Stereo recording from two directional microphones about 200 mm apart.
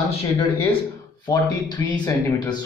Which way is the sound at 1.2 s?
20° left (ahead or behind).